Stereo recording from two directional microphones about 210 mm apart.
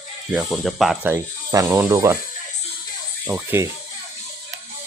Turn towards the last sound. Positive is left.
turn(degrees=-10)  # may be behind; listen again after turning